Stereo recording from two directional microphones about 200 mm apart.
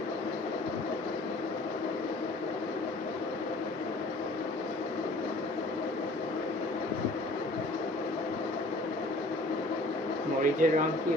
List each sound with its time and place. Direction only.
10.4 s speech: 40° right (ahead or behind)